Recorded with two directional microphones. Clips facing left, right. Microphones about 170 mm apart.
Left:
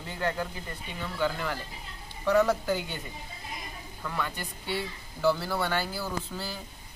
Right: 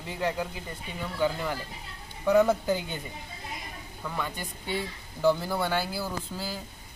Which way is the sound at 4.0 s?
10° right (ahead or behind).